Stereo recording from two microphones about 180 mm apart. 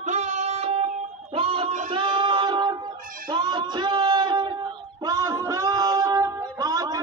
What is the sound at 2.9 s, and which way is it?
Music, 50° right (ahead or behind).